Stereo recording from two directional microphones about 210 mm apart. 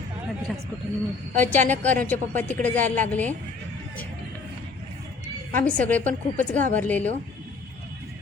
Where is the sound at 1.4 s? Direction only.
10° left (ahead or behind).